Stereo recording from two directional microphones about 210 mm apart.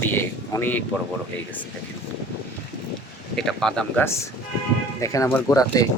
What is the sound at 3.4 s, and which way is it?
Speech, centre (ahead or behind).